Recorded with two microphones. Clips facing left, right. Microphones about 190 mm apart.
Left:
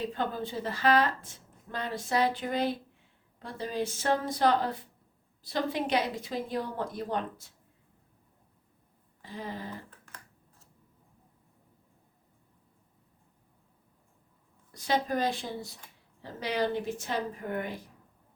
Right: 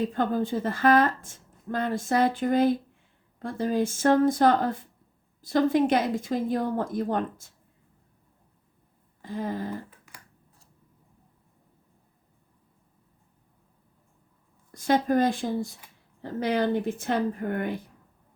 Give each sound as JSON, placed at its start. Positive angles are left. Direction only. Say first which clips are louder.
{"t": 0.1, "sound": "speech", "louder": "right 7 dB", "side_deg": -50}
{"t": 9.2, "sound": "speech", "louder": "right 8 dB", "side_deg": -50}
{"t": 14.7, "sound": "speech", "louder": "right 6 dB", "side_deg": -50}